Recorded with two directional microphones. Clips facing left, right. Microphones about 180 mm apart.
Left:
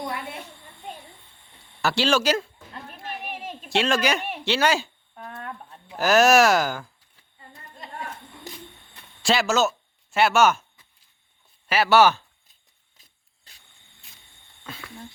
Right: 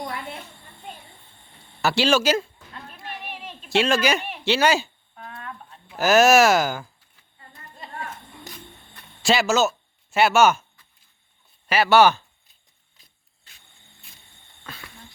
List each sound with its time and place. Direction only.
1.8 s speech: 5° right (ahead or behind)
3.2 s a sound: 45° left (ahead or behind)
3.7 s speech: 5° right (ahead or behind)
5.1 s a sound: 40° left (ahead or behind)
6.0 s speech: 5° right (ahead or behind)
9.2 s speech: 5° right (ahead or behind)
11.7 s speech: 5° left (ahead or behind)